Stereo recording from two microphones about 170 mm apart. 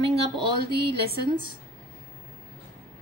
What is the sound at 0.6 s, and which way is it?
Speech, 70° right (ahead or behind).